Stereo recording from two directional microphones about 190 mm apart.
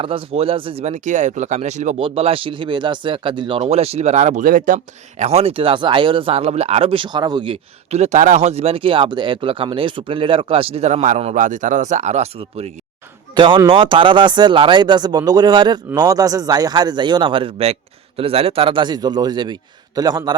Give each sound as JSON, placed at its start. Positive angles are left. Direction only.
{"t": 0.0, "sound": "a man's voice", "side_deg": -30}